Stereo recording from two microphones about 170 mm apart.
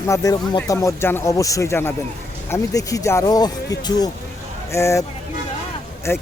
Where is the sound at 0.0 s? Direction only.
20° left (ahead or behind).